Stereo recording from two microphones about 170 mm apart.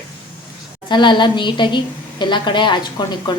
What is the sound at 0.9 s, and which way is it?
A woman's voice, 30° left (ahead or behind).